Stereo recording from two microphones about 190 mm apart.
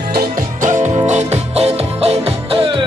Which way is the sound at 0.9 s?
35° right (ahead or behind).